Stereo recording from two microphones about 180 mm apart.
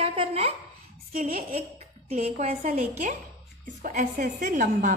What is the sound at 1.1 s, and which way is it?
Speech, 50° right (ahead or behind).